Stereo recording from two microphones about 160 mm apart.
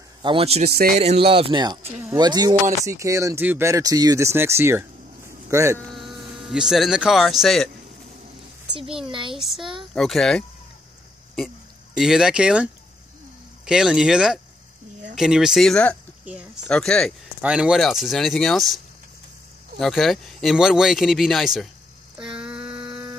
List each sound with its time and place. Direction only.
0.2 s speech: 35° right (ahead or behind)
0.7 s speech: 70° right (ahead or behind)
0.9 s speech: 40° right (ahead or behind); by 5.8 s 20° right (ahead or behind)
5.9 s speech: centre (ahead or behind)
9.0 s speech: 35° right (ahead or behind)
9.4 s speech: centre (ahead or behind)
12.0 s speech: 5° right (ahead or behind)
19.8 s speech: centre (ahead or behind)
22.2 s a sound: 5° right (ahead or behind)